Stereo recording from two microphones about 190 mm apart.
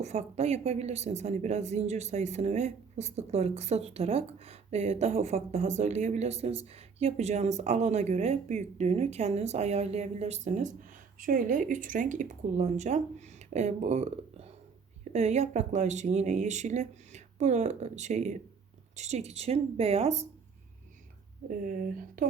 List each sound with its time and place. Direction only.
0.0 s speech: 35° right (ahead or behind)
21.6 s speech: 50° right (ahead or behind)